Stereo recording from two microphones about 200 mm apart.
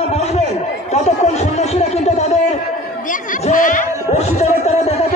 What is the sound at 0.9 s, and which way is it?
Speech, 35° left (ahead or behind).